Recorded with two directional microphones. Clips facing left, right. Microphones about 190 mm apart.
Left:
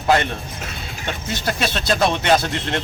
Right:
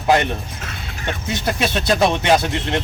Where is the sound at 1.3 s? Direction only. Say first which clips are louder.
Right 2 dB; 20° right (ahead or behind).